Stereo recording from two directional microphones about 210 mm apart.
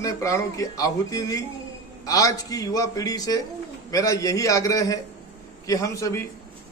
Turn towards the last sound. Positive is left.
turn(degrees=15)  # may be behind; listen again after turning